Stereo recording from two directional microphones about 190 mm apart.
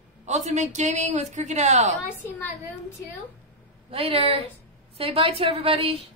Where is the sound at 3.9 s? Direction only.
30° right (ahead or behind).